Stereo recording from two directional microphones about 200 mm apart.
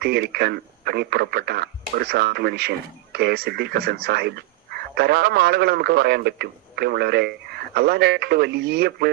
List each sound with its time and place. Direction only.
0.0 s speech: 55° right (ahead or behind)